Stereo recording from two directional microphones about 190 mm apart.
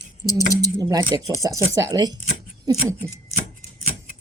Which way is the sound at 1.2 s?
15° right (ahead or behind).